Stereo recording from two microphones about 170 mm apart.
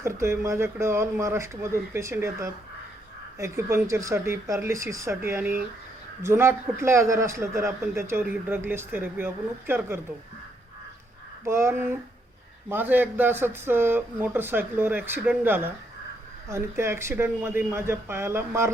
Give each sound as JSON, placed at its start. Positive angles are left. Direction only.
{"t": 0.0, "sound": "a man's voice", "side_deg": -15}
{"t": 11.4, "sound": "a man's voice", "side_deg": -15}